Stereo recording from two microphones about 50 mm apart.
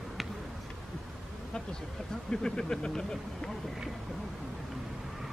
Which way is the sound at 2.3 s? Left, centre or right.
Centre.